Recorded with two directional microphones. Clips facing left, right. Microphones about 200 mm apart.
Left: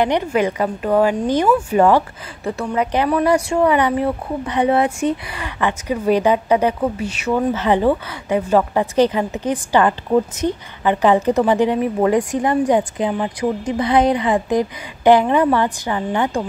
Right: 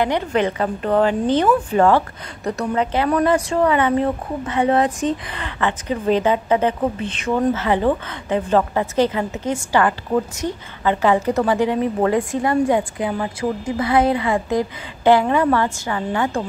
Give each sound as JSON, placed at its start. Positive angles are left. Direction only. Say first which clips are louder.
{"t": 0.0, "sound": "a woman's voice", "louder": "left 2 dB", "side_deg": 15}